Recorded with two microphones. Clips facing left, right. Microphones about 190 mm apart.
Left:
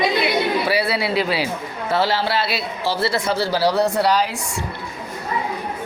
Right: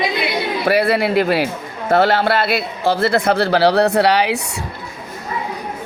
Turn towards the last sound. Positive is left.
turn(degrees=-70)  # may be behind; listen again after turning